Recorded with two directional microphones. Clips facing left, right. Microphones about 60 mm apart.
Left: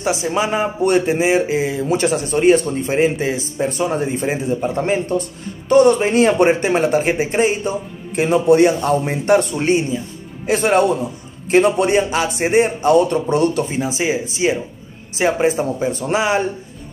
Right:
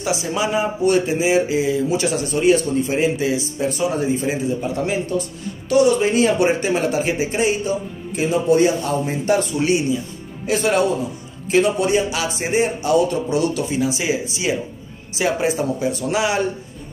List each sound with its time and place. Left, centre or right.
0.0 s a man's voice: left
8.2 s a man's voice: left